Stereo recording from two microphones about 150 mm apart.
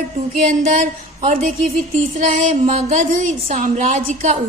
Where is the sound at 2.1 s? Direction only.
55° right (ahead or behind).